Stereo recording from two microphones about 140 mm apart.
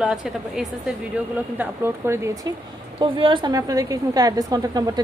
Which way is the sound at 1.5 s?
15° right (ahead or behind).